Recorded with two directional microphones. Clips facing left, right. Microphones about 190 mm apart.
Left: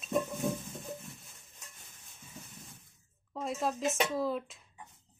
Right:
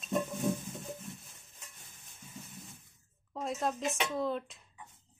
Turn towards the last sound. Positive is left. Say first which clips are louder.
# left 1 dB
turn(degrees=5)  # may be behind; listen again after turning